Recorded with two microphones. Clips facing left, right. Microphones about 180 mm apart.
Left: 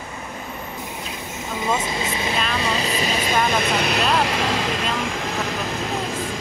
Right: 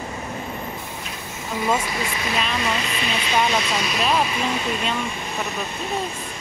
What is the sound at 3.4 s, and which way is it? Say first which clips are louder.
Speech: left 2 dB; 55° left (ahead or behind).